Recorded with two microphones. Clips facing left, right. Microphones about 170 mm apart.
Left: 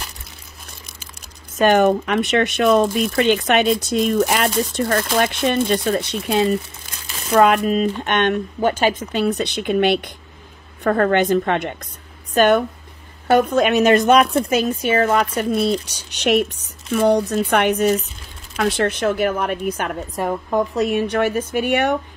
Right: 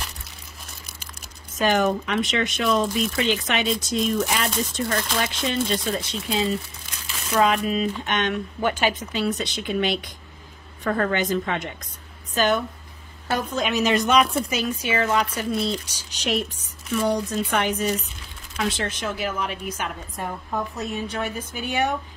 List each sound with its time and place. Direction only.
1.6 s speech: 55° left (ahead or behind)
8.5 s a woman's voice: 45° left (ahead or behind)
20.2 s a woman's voice: 90° left; by 21.9 s 70° left (ahead or behind)